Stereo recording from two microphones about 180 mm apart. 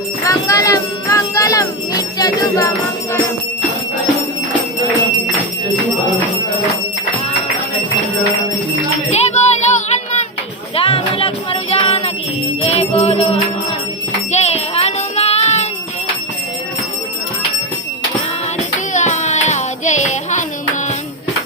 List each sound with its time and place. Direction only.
0.3 s jingle bell: 20° left (ahead or behind)
9.0 s music: 40° left (ahead or behind)
18.9 s music: 40° left (ahead or behind)